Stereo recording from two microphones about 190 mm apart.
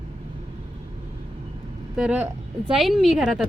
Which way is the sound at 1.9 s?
5° right (ahead or behind).